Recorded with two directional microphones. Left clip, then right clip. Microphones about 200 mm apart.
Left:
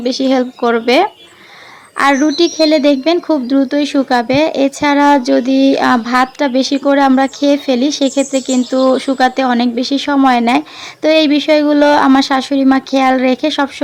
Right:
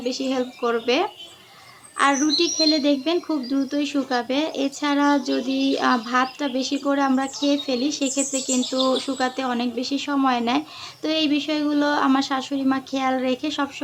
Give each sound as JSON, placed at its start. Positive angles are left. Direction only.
{"t": 0.0, "sound": "speech", "side_deg": 40}